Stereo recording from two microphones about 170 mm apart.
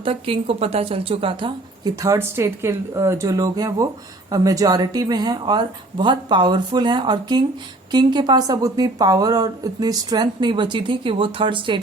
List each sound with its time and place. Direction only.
0.0 s a woman's voice: 35° right (ahead or behind)